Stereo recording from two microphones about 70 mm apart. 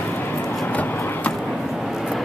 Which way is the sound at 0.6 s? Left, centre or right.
Left.